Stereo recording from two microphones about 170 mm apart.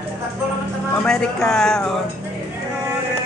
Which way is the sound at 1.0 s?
5° left (ahead or behind).